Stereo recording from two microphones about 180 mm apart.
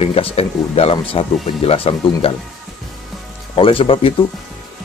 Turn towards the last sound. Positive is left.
turn(degrees=30)  # may be behind; listen again after turning